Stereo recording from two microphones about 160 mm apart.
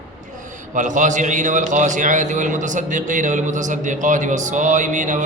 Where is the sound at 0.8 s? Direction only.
50° right (ahead or behind).